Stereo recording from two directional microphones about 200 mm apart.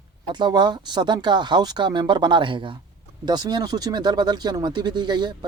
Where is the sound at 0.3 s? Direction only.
20° right (ahead or behind).